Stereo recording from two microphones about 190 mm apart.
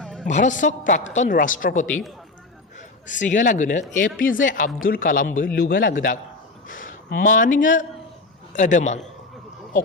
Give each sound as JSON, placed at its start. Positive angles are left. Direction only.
{"t": 0.0, "sound": "music", "side_deg": 5}
{"t": 0.3, "sound": "a woman's voice", "side_deg": 40}